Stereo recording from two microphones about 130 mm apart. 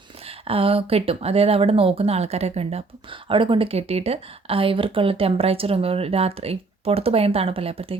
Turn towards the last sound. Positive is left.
turn(degrees=-45)  # may be behind; listen again after turning